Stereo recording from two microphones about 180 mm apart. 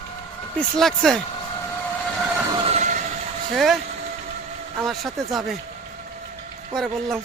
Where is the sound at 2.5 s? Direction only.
30° right (ahead or behind).